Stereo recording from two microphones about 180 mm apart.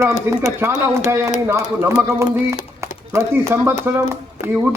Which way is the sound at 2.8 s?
15° right (ahead or behind).